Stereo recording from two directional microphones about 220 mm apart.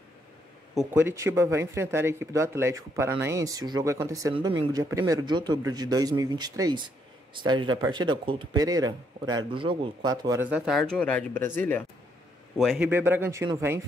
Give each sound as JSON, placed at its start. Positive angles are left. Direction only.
{"t": 0.9, "sound": "a man's voice", "side_deg": -10}
{"t": 12.8, "sound": "speech", "side_deg": -10}